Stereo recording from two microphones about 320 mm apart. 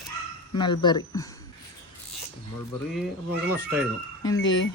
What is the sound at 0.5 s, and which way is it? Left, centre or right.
Speech, centre.